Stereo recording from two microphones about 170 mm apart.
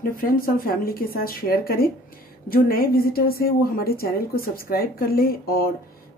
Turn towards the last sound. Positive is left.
turn(degrees=60)  # may be behind; listen again after turning